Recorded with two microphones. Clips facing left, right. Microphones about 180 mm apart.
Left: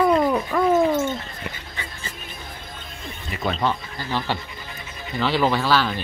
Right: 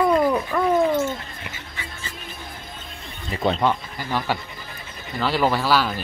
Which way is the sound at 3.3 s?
20° right (ahead or behind).